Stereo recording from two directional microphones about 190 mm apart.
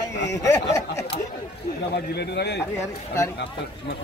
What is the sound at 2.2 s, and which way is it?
Speech, 60° left (ahead or behind).